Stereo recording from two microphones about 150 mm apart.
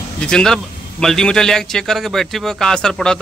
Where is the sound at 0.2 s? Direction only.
5° left (ahead or behind).